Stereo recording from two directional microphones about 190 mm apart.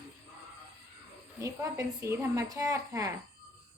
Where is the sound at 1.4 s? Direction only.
15° right (ahead or behind).